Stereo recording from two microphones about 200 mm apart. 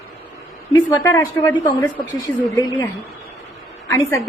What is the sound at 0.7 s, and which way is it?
A woman's voice, 15° left (ahead or behind).